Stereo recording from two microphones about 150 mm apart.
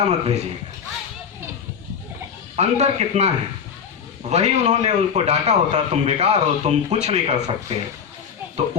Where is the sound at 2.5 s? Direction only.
45° right (ahead or behind).